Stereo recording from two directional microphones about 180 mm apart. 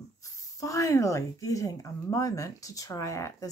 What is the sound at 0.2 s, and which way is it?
Speech, 20° left (ahead or behind).